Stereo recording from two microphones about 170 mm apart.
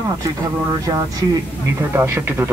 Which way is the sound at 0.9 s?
20° right (ahead or behind).